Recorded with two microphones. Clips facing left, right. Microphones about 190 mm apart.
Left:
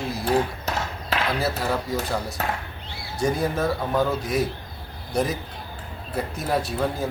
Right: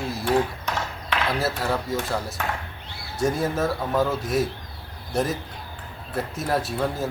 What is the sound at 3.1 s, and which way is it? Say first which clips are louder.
Speech: even; centre (ahead or behind).